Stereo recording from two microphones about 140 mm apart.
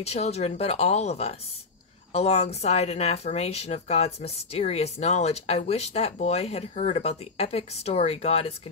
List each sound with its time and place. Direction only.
0.0 s speech: 50° left (ahead or behind)